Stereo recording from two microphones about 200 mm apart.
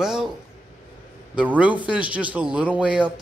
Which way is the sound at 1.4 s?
5° right (ahead or behind).